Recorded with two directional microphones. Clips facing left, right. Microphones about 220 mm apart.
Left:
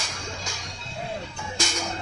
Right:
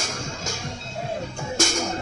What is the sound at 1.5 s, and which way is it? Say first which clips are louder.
Music: right 6 dB; 45° right (ahead or behind).